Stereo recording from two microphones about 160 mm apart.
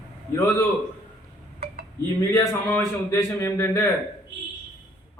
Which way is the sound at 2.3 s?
15° left (ahead or behind).